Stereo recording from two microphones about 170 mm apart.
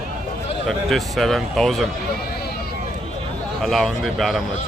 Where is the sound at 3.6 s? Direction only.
Centre (ahead or behind).